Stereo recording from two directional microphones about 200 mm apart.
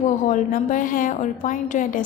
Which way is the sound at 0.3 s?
40° left (ahead or behind).